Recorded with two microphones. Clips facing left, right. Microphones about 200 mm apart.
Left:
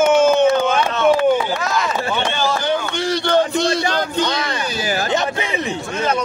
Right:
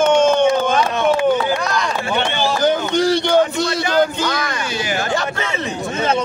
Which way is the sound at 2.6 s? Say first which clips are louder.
Right 5 dB; 40° right (ahead or behind).